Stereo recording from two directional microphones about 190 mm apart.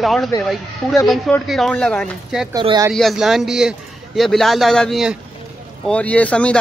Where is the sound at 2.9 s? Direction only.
Centre (ahead or behind).